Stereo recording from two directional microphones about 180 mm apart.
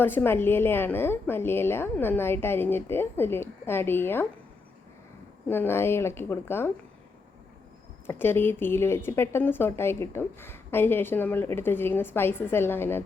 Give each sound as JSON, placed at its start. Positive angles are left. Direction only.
{"t": 0.0, "sound": "speech", "side_deg": 10}
{"t": 5.5, "sound": "speech", "side_deg": 10}
{"t": 8.0, "sound": "speech", "side_deg": 10}